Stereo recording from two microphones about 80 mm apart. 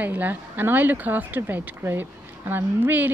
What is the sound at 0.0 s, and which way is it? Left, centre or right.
Speech, right.